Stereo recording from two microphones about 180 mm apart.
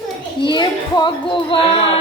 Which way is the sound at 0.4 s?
25° left (ahead or behind).